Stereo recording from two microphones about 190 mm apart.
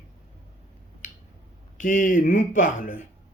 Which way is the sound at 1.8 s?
45° left (ahead or behind).